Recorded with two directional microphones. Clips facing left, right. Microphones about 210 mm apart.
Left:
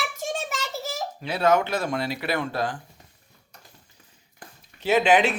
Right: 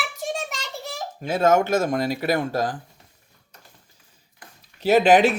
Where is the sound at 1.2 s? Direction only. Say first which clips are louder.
Right 3 dB; 45° right (ahead or behind).